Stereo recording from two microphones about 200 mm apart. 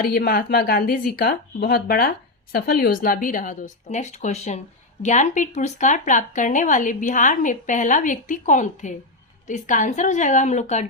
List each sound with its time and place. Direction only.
0.0 s speech: 45° left (ahead or behind)